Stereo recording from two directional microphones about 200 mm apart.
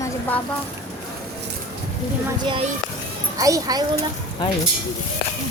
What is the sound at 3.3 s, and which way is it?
Speech, 15° right (ahead or behind).